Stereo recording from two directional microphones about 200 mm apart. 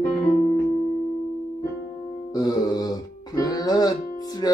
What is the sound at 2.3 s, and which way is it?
Music, 20° left (ahead or behind).